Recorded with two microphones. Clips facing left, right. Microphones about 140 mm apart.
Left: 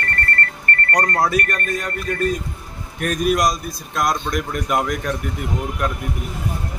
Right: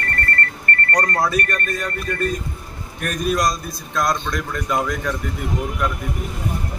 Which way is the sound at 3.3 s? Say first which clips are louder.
Left 1 dB; 15° left (ahead or behind).